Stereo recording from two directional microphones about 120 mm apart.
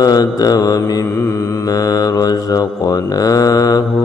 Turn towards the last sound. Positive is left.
turn(degrees=30)  # may be behind; listen again after turning